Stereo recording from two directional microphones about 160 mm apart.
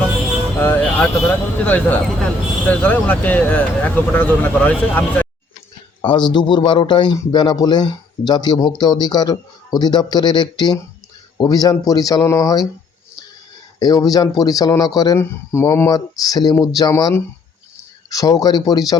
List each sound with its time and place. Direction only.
0.6 s vehicle: 10° left (ahead or behind)
0.9 s speech: 10° left (ahead or behind)
6.0 s speech: 30° left (ahead or behind)
13.7 s speech: 25° left (ahead or behind)